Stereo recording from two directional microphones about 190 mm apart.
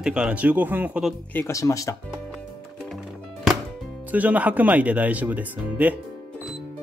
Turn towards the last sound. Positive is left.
turn(degrees=-10)  # may be behind; listen again after turning